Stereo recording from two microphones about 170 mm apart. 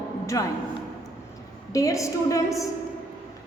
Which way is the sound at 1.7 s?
20° left (ahead or behind).